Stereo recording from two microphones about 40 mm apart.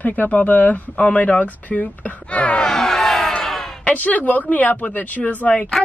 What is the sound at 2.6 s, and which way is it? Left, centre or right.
Music, centre.